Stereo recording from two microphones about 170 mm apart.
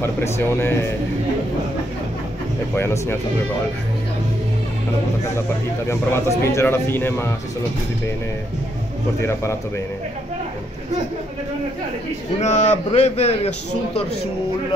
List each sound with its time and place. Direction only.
0.0 s speech: 15° left (ahead or behind)
2.7 s speech: 15° left (ahead or behind)
5.9 s speech: 15° left (ahead or behind)
9.2 s speech: 15° left (ahead or behind)
12.4 s speech: 40° left (ahead or behind)